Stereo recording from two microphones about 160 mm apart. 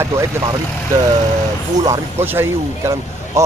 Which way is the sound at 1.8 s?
15° right (ahead or behind).